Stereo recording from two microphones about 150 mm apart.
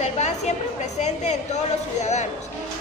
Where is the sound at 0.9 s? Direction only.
50° left (ahead or behind).